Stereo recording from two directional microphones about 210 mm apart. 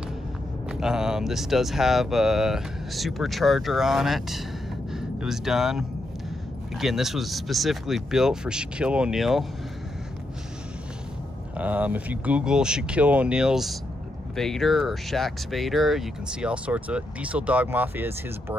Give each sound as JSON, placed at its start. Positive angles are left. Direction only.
{"t": 0.7, "sound": "speech", "side_deg": -5}
{"t": 11.5, "sound": "speech", "side_deg": -5}